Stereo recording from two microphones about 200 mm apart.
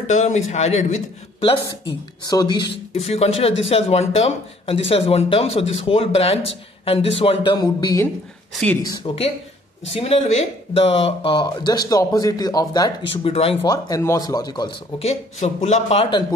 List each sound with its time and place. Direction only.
0.1 s speech: 35° left (ahead or behind); by 12.9 s 20° left (ahead or behind)
13.2 s speech: 30° left (ahead or behind)
13.6 s speech: 20° left (ahead or behind)